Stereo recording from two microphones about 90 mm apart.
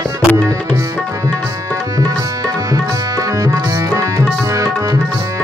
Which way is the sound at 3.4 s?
35° right (ahead or behind).